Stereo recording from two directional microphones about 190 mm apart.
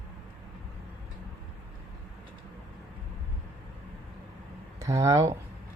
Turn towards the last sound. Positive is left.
turn(degrees=-15)  # may be behind; listen again after turning